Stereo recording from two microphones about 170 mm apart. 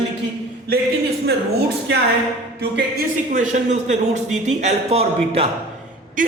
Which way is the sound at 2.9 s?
50° right (ahead or behind).